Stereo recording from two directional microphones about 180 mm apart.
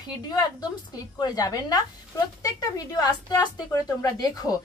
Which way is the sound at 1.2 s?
20° left (ahead or behind).